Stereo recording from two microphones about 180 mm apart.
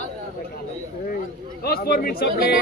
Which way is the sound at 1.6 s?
60° left (ahead or behind).